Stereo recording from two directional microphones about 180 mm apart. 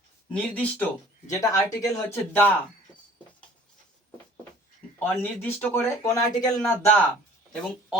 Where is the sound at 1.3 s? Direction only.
20° left (ahead or behind).